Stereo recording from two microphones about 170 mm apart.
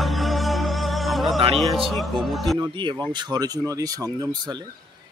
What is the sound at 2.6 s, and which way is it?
Speech, 25° right (ahead or behind).